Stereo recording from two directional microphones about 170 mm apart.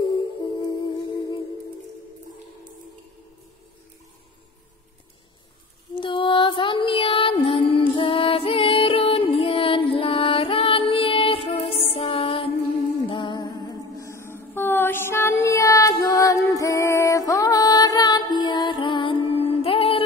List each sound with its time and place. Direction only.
0.6 s music: 25° left (ahead or behind)
5.9 s music: 30° left (ahead or behind)